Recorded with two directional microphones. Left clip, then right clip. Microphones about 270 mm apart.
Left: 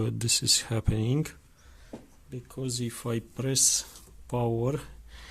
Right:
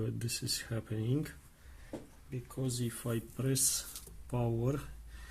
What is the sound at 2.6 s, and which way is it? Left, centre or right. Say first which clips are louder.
Speech: left 5 dB; left.